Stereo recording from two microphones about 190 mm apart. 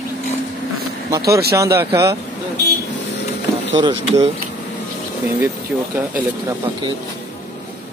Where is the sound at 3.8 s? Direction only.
25° right (ahead or behind).